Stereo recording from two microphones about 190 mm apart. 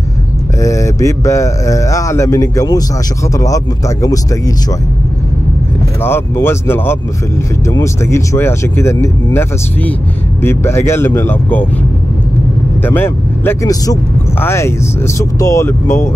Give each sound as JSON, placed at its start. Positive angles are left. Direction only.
{"t": 0.6, "sound": "speech", "side_deg": 15}
{"t": 6.0, "sound": "speech", "side_deg": 10}
{"t": 12.8, "sound": "speech", "side_deg": 10}